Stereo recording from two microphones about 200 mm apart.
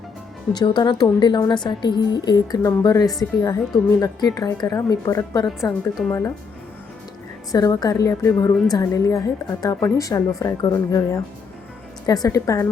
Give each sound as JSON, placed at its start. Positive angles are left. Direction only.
{"t": 0.5, "sound": "a woman's voice", "side_deg": 20}
{"t": 7.5, "sound": "a woman's voice", "side_deg": 15}